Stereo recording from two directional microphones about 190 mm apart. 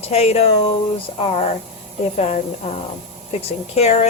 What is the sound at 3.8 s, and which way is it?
Speech, 35° left (ahead or behind).